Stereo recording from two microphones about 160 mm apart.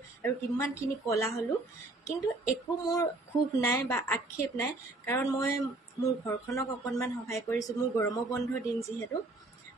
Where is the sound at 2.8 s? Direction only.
20° left (ahead or behind).